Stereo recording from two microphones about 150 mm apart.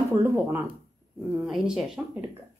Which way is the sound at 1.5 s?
5° right (ahead or behind).